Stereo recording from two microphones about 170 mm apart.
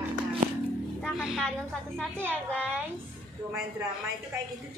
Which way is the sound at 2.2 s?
10° left (ahead or behind).